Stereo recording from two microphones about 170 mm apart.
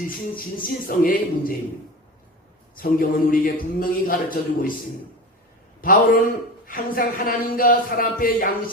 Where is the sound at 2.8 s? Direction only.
55° left (ahead or behind).